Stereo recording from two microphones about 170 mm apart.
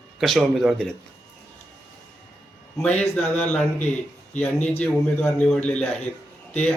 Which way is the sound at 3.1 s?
5° left (ahead or behind).